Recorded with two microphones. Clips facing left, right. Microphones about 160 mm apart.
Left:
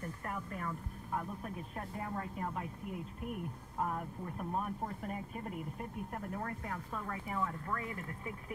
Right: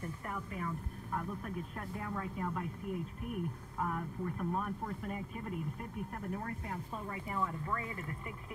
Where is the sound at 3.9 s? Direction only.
15° left (ahead or behind).